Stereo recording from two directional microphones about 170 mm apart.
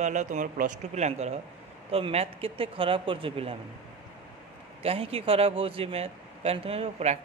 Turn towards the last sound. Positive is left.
turn(degrees=-40)  # may be behind; listen again after turning